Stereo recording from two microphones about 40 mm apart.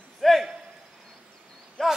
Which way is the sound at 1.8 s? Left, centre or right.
Centre.